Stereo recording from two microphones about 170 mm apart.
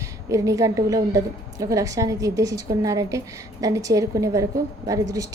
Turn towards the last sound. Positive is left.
turn(degrees=-20)  # may be behind; listen again after turning